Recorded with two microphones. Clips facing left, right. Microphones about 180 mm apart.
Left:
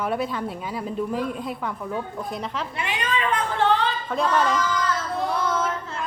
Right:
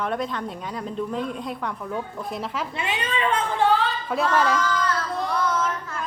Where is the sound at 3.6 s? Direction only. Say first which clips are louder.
Even; 5° right (ahead or behind).